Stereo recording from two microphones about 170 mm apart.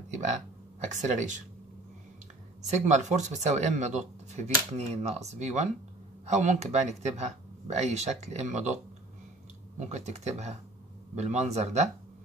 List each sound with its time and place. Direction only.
0.7 s speech: 45° right (ahead or behind)
2.6 s speech: 45° right (ahead or behind)
9.8 s speech: 40° right (ahead or behind)